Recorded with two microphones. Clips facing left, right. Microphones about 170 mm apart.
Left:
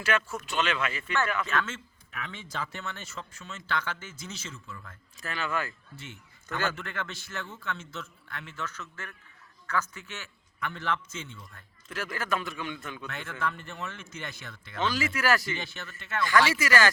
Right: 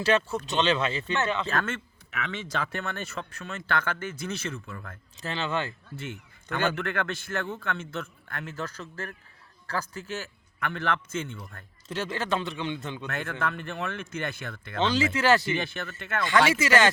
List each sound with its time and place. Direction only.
0.0 s speech: 30° right (ahead or behind)
1.6 s speech: 70° right (ahead or behind)
5.2 s speech: 25° right (ahead or behind)
6.0 s a man's voice: 60° right (ahead or behind); by 10.2 s 35° right (ahead or behind)
10.6 s speech: 60° right (ahead or behind)
11.9 s speech: 25° right (ahead or behind)
13.1 s a man's voice: 50° right (ahead or behind)
13.4 s speech: 60° right (ahead or behind)
14.8 s speech: 25° right (ahead or behind)
15.5 s speech: 55° right (ahead or behind)
16.6 s speech: 25° right (ahead or behind)